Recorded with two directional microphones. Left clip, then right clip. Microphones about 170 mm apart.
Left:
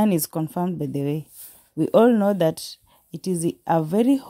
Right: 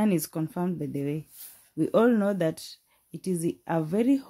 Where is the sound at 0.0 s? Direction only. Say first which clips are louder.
Left 5 dB; 35° left (ahead or behind).